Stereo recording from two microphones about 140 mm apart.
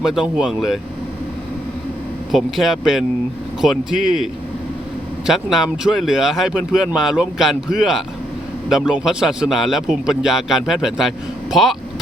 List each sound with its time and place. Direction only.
0.1 s speech: 5° right (ahead or behind)
2.3 s speech: centre (ahead or behind)